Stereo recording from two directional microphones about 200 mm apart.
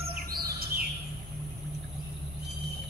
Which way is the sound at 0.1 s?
50° right (ahead or behind).